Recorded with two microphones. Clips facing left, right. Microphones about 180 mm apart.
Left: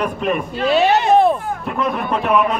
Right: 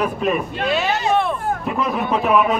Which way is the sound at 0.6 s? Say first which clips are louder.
Left 5 dB; 35° left (ahead or behind).